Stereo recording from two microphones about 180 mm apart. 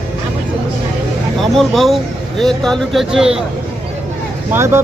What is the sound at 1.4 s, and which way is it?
Speech, centre (ahead or behind).